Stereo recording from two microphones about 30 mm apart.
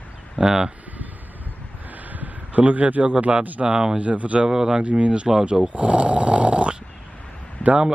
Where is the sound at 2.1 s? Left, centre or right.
Right.